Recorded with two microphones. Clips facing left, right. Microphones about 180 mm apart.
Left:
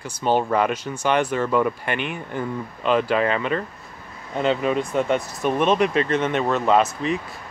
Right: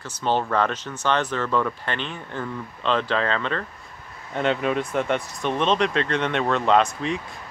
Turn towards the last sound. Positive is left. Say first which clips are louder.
# left 1 dB
turn(degrees=5)  # may be behind; listen again after turning